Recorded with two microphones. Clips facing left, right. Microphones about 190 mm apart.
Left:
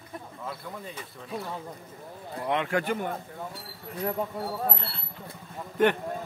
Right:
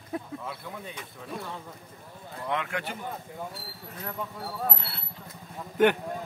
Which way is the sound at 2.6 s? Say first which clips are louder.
Left 7 dB; 45° left (ahead or behind).